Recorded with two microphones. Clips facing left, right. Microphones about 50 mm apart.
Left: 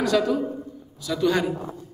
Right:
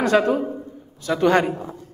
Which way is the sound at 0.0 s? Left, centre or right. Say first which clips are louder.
Right 3 dB; right.